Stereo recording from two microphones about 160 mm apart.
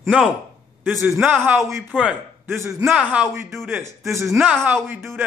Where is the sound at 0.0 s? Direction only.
5° right (ahead or behind).